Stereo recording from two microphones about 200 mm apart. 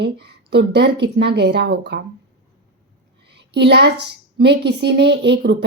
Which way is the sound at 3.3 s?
60° right (ahead or behind).